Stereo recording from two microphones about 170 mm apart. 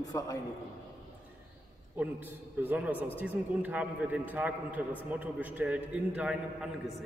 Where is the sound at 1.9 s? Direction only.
10° right (ahead or behind).